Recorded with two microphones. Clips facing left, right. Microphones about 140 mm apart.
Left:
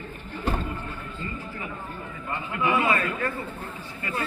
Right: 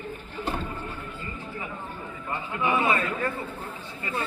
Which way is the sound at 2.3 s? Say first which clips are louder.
Left 1 dB; 20° right (ahead or behind).